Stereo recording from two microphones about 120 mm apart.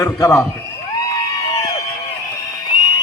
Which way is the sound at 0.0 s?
25° left (ahead or behind).